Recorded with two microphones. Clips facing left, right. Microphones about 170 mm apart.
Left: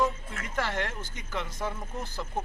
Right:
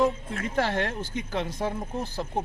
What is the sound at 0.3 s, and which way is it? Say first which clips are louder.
Speech: right 5 dB; 35° right (ahead or behind).